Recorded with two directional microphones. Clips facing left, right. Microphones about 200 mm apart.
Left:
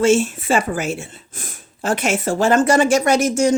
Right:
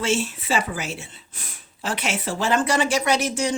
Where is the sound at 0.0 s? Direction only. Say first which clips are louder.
Left 9 dB; 45° left (ahead or behind).